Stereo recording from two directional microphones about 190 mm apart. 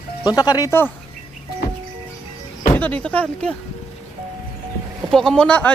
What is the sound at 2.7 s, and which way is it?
Speech, 10° left (ahead or behind).